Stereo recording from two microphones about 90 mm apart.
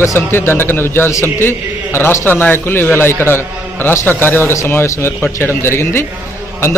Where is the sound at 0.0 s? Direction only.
30° left (ahead or behind).